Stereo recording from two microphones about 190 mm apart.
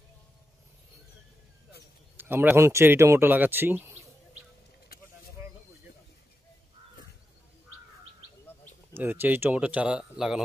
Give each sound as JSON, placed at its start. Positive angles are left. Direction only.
{"t": 2.1, "sound": "speech", "side_deg": -10}
{"t": 8.9, "sound": "speech", "side_deg": -10}